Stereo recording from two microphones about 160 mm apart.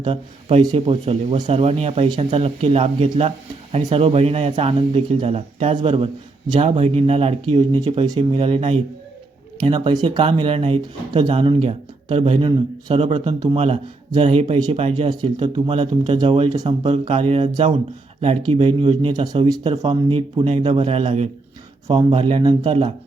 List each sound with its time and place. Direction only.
0.0 s speech: 35° right (ahead or behind)
7.5 s speech: 25° right (ahead or behind)
19.7 s speech: 40° right (ahead or behind)